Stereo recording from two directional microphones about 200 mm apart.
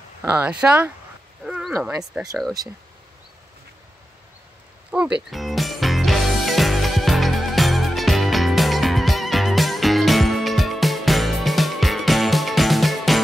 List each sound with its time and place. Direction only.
0.2 s speech: 10° right (ahead or behind)
1.4 s a sound: centre (ahead or behind)
1.9 s speech: 15° right (ahead or behind)
4.9 s music: 5° right (ahead or behind)